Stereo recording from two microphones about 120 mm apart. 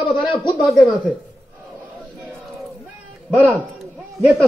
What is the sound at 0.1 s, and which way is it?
Speech, 40° left (ahead or behind).